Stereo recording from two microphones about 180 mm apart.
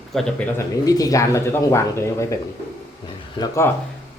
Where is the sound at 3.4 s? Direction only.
15° left (ahead or behind).